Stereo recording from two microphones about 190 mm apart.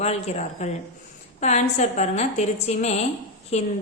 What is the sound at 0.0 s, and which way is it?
A woman's voice, 35° left (ahead or behind).